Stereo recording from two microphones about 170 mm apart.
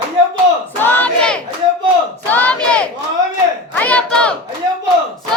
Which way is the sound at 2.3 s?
10° left (ahead or behind).